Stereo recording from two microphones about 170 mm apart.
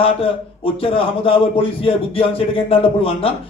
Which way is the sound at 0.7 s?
35° left (ahead or behind).